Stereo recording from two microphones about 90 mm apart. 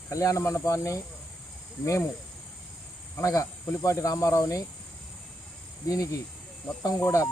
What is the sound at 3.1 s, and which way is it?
Speech, 35° left (ahead or behind).